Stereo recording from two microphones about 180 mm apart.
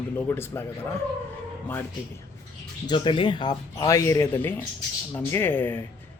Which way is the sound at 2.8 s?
25° left (ahead or behind).